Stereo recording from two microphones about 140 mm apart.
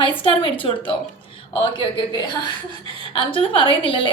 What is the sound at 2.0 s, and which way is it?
A woman's voice, 35° left (ahead or behind).